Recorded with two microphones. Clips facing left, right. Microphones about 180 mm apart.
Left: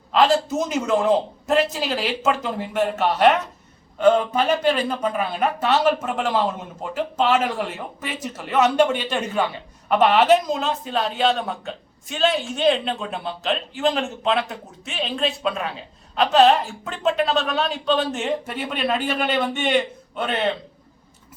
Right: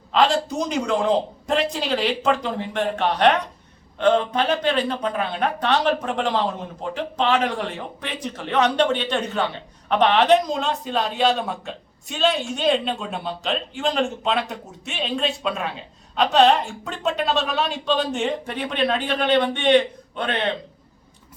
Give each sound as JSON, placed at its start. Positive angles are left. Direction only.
{"t": 0.1, "sound": "speech", "side_deg": 0}